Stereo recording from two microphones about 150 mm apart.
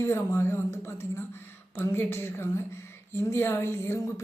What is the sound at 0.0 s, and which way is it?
A woman's voice, 15° left (ahead or behind).